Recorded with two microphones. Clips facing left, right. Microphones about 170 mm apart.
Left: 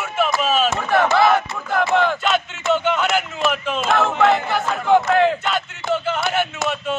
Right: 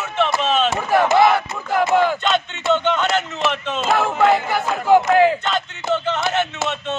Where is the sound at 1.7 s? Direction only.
10° right (ahead or behind).